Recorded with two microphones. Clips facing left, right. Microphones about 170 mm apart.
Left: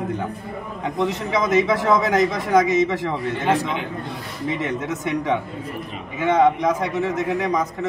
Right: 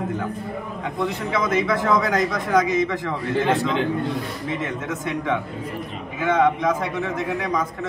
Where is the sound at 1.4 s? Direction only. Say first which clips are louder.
Left 3 dB; 20° left (ahead or behind).